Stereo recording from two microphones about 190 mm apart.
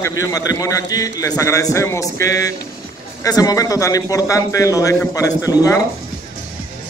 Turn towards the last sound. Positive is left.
turn(degrees=15)  # may be behind; listen again after turning